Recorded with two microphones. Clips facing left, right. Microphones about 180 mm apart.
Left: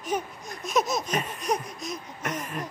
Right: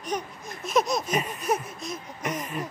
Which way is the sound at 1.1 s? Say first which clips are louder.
Right 2 dB; 10° right (ahead or behind).